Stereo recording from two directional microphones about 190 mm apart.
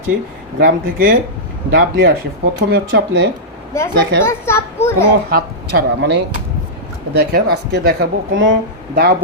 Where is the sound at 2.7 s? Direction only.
60° right (ahead or behind).